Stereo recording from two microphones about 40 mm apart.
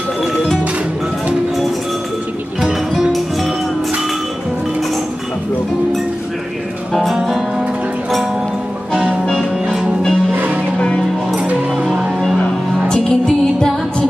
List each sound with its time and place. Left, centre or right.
6.9 s music: centre
10.3 s music: right
12.9 s music: centre